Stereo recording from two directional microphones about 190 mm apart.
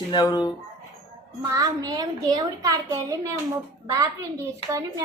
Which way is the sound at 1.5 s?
20° right (ahead or behind).